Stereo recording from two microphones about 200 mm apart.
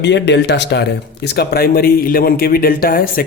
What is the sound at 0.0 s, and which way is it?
Speech, 60° left (ahead or behind).